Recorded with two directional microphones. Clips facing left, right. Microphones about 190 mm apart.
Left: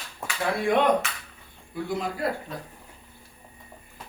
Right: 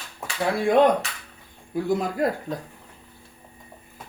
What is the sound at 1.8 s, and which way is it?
Speech, 45° right (ahead or behind).